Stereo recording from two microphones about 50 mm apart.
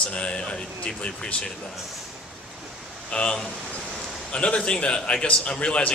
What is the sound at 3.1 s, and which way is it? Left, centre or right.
Speech, left.